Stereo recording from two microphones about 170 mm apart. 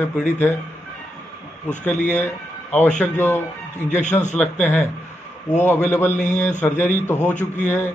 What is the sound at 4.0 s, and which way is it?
Speech, 45° left (ahead or behind).